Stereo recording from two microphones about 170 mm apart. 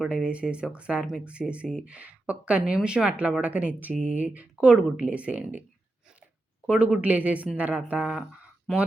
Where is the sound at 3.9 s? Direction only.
45° right (ahead or behind).